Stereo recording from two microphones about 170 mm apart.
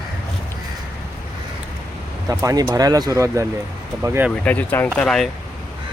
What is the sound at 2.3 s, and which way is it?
Speech, 20° right (ahead or behind).